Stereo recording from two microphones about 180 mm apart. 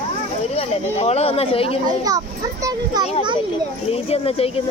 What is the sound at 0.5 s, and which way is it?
Speech, 35° left (ahead or behind).